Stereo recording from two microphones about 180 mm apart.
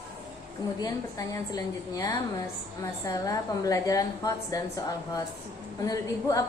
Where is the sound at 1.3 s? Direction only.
20° left (ahead or behind).